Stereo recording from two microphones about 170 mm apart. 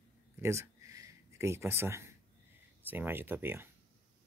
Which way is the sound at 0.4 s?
15° right (ahead or behind).